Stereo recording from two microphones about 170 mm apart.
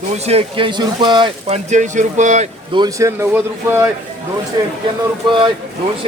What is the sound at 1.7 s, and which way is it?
Speech, 45° right (ahead or behind).